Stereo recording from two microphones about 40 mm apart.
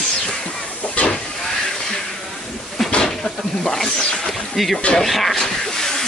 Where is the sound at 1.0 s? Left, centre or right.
Left.